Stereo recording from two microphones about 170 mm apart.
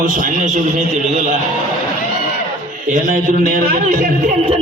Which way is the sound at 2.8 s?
45° right (ahead or behind).